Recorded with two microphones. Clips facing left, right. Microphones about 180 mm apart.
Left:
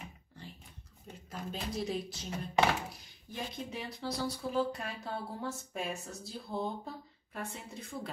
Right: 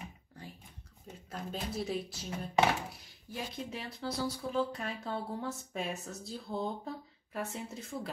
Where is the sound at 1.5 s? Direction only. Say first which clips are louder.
Even; 5° right (ahead or behind).